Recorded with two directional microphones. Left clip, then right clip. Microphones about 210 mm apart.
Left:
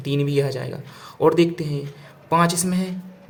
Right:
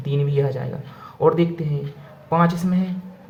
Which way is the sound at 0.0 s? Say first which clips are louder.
Left 1 dB; 25° left (ahead or behind).